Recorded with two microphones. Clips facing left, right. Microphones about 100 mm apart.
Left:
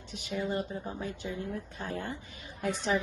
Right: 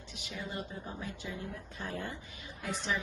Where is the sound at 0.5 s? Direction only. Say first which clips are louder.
Left 7 dB; 40° left (ahead or behind).